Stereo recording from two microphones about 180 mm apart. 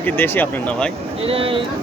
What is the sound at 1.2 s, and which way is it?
Speech, 30° right (ahead or behind).